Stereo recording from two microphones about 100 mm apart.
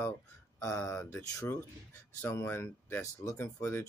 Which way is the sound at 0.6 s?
25° left (ahead or behind).